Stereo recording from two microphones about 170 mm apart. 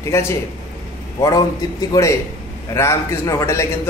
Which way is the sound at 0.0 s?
15° left (ahead or behind).